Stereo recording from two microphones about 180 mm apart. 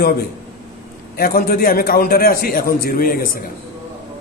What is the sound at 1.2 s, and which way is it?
A man's voice, 55° left (ahead or behind).